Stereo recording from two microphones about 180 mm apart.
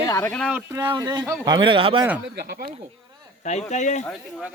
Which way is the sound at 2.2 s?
65° right (ahead or behind).